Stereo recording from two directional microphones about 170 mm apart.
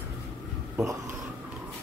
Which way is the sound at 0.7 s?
15° right (ahead or behind).